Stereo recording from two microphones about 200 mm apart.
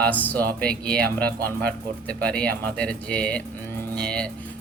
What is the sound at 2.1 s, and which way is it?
Speech, 5° left (ahead or behind).